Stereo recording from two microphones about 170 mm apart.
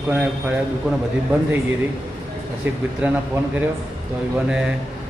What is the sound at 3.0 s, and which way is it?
Speech, 10° right (ahead or behind).